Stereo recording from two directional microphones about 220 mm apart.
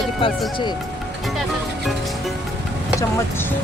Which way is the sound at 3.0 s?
10° left (ahead or behind).